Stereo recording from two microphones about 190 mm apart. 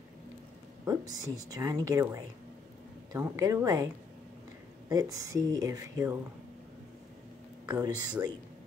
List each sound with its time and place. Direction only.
0.8 s a woman's voice: 20° right (ahead or behind)
7.6 s speech: 15° right (ahead or behind)